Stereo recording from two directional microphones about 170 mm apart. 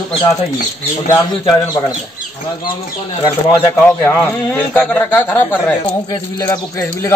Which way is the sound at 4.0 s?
10° left (ahead or behind).